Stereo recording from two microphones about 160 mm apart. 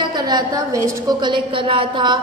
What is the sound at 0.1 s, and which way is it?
A woman's voice, 25° right (ahead or behind).